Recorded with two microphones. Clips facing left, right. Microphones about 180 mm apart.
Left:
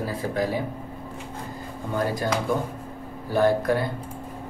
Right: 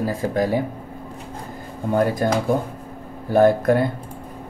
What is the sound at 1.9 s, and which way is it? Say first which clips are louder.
Speech: right 6 dB; 50° right (ahead or behind).